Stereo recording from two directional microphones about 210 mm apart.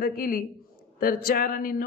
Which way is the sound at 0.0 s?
40° left (ahead or behind).